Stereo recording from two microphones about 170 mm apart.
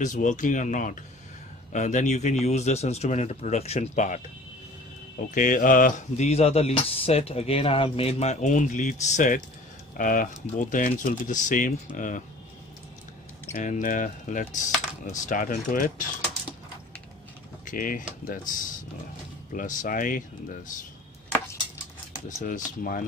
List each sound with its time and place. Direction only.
0.0 s speech: 50° left (ahead or behind)
5.3 s speech: 50° left (ahead or behind)
13.5 s speech: 50° left (ahead or behind)
17.6 s speech: 55° left (ahead or behind)
22.4 s speech: 55° left (ahead or behind)